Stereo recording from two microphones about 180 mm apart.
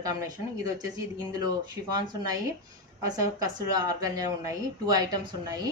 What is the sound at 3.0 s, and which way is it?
Speech, 20° right (ahead or behind).